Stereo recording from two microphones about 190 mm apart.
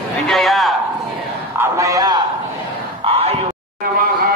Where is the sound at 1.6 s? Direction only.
15° right (ahead or behind).